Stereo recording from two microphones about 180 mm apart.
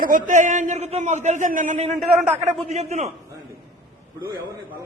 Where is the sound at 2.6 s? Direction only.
40° right (ahead or behind).